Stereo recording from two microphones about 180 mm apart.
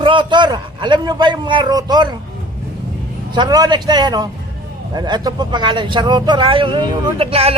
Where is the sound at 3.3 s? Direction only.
25° right (ahead or behind).